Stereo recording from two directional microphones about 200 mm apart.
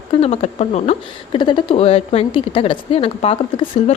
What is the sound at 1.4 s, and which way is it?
A woman's voice, 25° left (ahead or behind).